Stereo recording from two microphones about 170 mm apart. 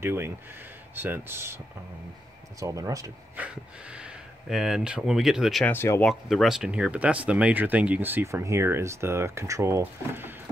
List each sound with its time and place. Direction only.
0.0 s speech: 15° right (ahead or behind)
2.6 s speech: 20° right (ahead or behind)
3.3 s speech: 5° right (ahead or behind)
5.7 s speech: 10° left (ahead or behind)
6.2 s speech: centre (ahead or behind)